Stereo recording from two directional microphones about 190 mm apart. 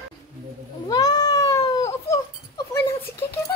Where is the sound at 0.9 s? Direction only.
20° left (ahead or behind).